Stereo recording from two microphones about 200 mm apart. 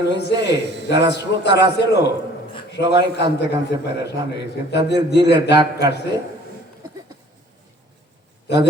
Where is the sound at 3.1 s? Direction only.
60° left (ahead or behind).